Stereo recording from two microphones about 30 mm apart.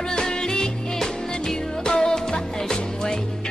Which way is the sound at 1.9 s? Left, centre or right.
Left.